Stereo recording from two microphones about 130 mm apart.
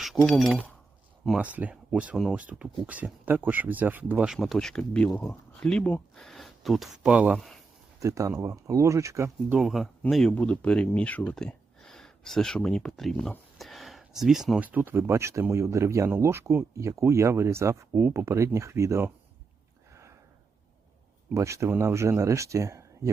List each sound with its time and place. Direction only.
0.3 s speech: centre (ahead or behind)
1.5 s speech: 10° right (ahead or behind)
4.4 s speech: 5° left (ahead or behind)
7.9 s speech: 25° right (ahead or behind)
9.5 s speech: centre (ahead or behind); by 19.1 s 20° right (ahead or behind)
19.9 s a sound: 20° right (ahead or behind)
21.3 s speech: 20° right (ahead or behind)